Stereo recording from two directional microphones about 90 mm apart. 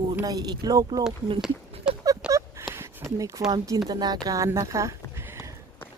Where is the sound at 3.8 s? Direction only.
45° right (ahead or behind).